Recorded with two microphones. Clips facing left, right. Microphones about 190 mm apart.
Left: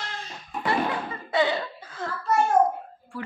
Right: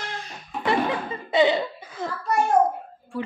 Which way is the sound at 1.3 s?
20° right (ahead or behind).